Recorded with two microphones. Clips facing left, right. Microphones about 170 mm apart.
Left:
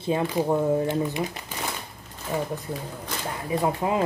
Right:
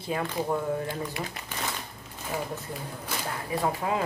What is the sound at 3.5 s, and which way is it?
Speech, 20° left (ahead or behind).